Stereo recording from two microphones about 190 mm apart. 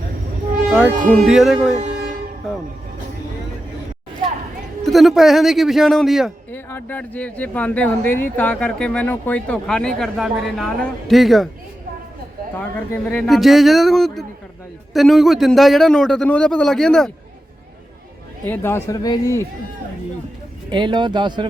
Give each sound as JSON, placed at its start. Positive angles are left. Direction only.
{"t": 1.1, "sound": "a man's voice", "side_deg": 0}
{"t": 1.7, "sound": "vehicle", "side_deg": -40}
{"t": 2.4, "sound": "music", "side_deg": 0}
{"t": 4.8, "sound": "a man's voice", "side_deg": 0}
{"t": 6.5, "sound": "a man's voice", "side_deg": 10}
{"t": 12.5, "sound": "a man's voice", "side_deg": 10}
{"t": 18.4, "sound": "speech", "side_deg": 10}
{"t": 20.7, "sound": "speech", "side_deg": -25}